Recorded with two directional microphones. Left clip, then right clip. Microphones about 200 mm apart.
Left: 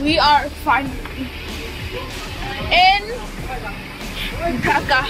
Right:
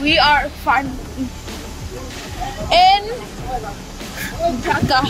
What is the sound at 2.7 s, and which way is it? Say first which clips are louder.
Speech: right 2 dB; 25° right (ahead or behind).